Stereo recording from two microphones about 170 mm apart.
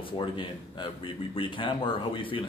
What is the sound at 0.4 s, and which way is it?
Speech, 30° left (ahead or behind).